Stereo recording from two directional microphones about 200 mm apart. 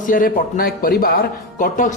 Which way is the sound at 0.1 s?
45° left (ahead or behind).